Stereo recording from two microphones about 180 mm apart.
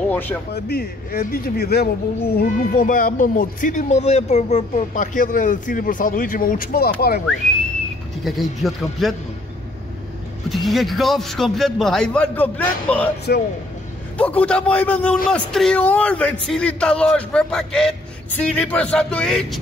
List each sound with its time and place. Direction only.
0.1 s speech: 10° left (ahead or behind)
0.5 s speech: 60° left (ahead or behind)
8.2 s a man's voice: centre (ahead or behind)
10.5 s a man's voice: centre (ahead or behind)
14.1 s a man's voice: 10° left (ahead or behind)